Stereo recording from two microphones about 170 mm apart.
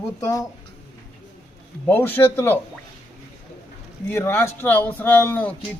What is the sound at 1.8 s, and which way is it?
Speech, 15° left (ahead or behind).